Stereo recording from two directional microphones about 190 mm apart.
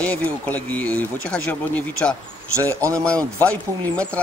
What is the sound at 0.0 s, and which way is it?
Speech, 10° left (ahead or behind).